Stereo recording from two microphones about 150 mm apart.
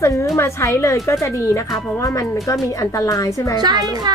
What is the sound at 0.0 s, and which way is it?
Speech, 20° left (ahead or behind).